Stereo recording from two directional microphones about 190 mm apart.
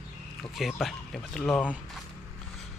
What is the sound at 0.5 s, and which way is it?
Speech, centre (ahead or behind).